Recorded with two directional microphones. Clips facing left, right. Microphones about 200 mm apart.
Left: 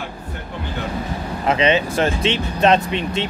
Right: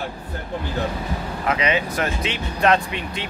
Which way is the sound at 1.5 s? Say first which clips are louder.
Left 5 dB; 25° left (ahead or behind).